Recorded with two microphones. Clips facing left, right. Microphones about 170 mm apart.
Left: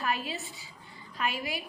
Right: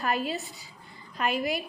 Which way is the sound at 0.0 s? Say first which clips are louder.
Right 4 dB; 40° right (ahead or behind).